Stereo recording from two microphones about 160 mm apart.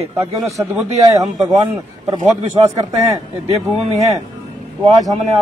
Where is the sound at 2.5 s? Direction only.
25° right (ahead or behind).